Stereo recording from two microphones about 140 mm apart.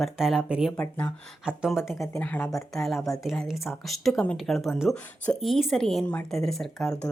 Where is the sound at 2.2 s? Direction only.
10° left (ahead or behind).